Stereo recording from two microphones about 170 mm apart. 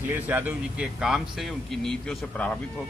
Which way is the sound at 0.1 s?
10° right (ahead or behind).